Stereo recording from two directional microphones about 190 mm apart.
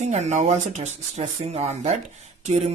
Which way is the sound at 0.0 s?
35° right (ahead or behind).